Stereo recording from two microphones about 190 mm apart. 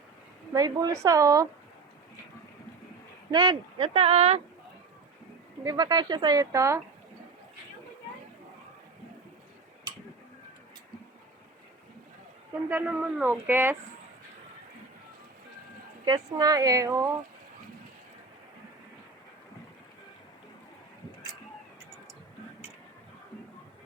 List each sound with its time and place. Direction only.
0.5 s speech: 20° right (ahead or behind)
3.3 s speech: 25° right (ahead or behind)
5.6 s speech: 20° right (ahead or behind)
12.6 s speech: 10° right (ahead or behind)
16.0 s speech: 20° right (ahead or behind)